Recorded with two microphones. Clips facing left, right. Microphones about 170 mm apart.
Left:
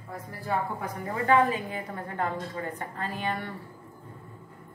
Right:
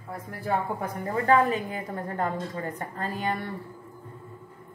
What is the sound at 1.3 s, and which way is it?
A woman's voice, 40° right (ahead or behind).